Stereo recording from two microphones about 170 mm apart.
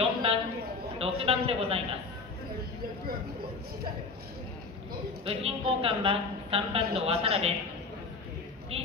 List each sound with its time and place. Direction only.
0.0 s a sound: 35° right (ahead or behind)
0.9 s a man's voice: 35° right (ahead or behind)
5.2 s a woman's voice: 35° right (ahead or behind)
8.7 s a woman's voice: 35° right (ahead or behind)